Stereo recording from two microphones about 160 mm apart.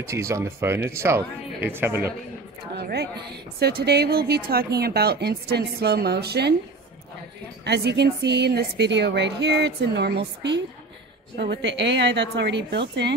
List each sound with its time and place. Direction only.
0.0 s speech: 15° right (ahead or behind)
2.7 s a woman's voice: 90° right
7.6 s a woman's voice: 90° right